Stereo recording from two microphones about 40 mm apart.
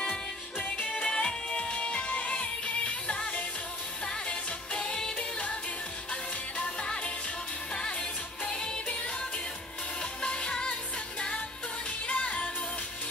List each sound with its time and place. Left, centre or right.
0.0 s music: left
1.0 s music: centre
6.6 s music: left
10.2 s music: left